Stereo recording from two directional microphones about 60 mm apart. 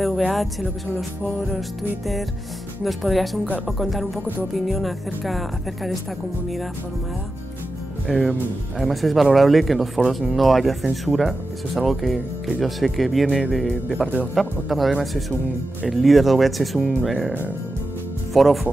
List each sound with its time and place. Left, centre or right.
0.3 s speech: centre
8.1 s speech: centre
14.0 s speech: right
14.3 s speech: centre
18.3 s speech: centre